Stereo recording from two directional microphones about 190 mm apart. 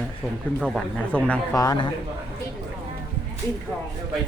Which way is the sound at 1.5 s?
20° left (ahead or behind).